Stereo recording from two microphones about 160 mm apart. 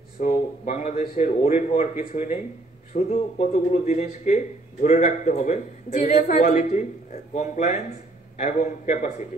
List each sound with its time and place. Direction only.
0.2 s a man's voice: 55° left (ahead or behind)